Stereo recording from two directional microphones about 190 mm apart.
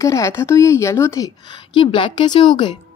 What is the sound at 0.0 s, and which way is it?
A woman's voice, 15° left (ahead or behind).